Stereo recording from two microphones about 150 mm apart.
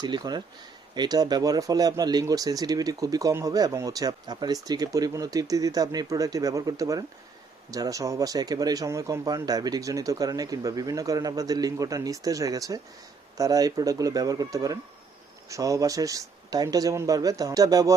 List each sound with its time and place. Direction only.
0.0 s speech: 30° right (ahead or behind)